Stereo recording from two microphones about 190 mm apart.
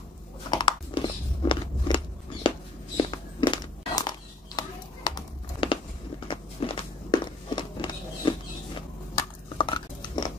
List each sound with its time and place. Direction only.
0.5 s a sound: 25° left (ahead or behind)
3.0 s walk: 25° left (ahead or behind)
4.6 s crumpling: 25° left (ahead or behind)
6.2 s walk: 25° left (ahead or behind)
9.6 s chewing: 25° left (ahead or behind)